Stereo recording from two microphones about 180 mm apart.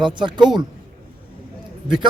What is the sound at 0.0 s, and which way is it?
Speech, 25° right (ahead or behind).